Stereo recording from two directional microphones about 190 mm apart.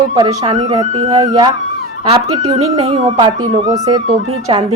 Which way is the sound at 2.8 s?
25° right (ahead or behind).